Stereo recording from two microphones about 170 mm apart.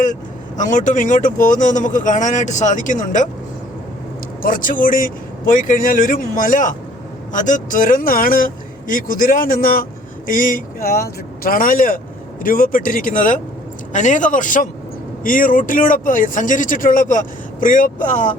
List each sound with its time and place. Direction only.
0.0 s speech: 50° left (ahead or behind)
4.4 s speech: 55° left (ahead or behind)